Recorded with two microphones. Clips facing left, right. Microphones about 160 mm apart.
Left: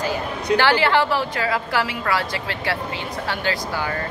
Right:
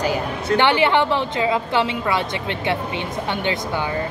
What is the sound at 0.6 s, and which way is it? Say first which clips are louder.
A woman's voice: right 2 dB; 20° right (ahead or behind).